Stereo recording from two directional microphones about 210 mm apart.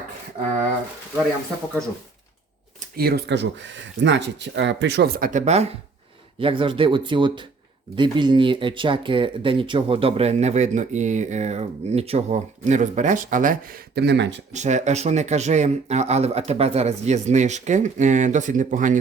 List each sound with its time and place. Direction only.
2.9 s speech: 45° right (ahead or behind)
14.5 s speech: 35° right (ahead or behind)